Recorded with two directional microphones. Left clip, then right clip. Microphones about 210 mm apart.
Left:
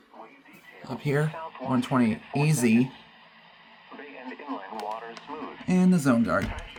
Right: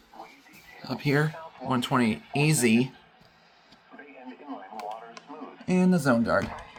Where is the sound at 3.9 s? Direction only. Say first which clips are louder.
Left 5 dB; 45° left (ahead or behind).